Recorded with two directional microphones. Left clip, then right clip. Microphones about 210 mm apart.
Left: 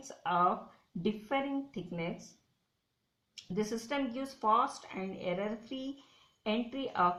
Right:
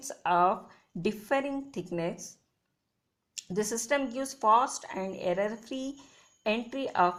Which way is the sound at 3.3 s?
35° right (ahead or behind).